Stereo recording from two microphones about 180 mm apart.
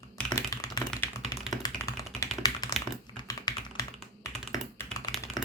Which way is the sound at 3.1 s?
25° left (ahead or behind).